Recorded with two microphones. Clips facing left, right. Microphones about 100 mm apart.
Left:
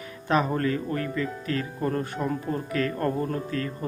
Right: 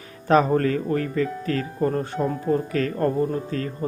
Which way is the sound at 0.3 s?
40° right (ahead or behind).